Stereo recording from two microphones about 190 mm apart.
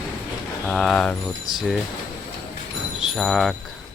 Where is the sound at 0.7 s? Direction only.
Centre (ahead or behind).